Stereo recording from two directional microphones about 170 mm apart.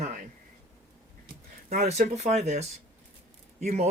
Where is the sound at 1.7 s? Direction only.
45° right (ahead or behind).